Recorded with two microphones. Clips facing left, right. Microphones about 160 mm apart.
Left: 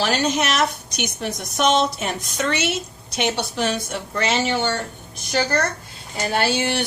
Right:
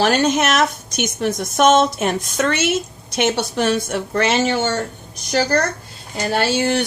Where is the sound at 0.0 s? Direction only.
55° right (ahead or behind).